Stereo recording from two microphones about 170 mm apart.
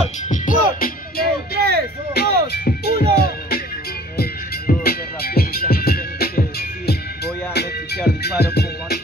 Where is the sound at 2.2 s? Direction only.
70° left (ahead or behind).